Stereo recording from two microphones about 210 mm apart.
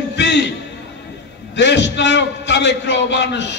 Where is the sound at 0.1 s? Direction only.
55° left (ahead or behind).